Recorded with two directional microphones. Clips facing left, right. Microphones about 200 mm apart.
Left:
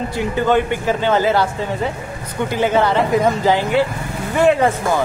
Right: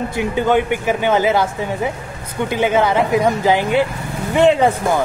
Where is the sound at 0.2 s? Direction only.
15° right (ahead or behind).